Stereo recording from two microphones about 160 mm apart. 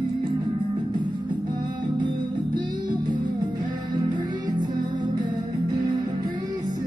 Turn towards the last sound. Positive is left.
turn(degrees=-25)  # may be behind; listen again after turning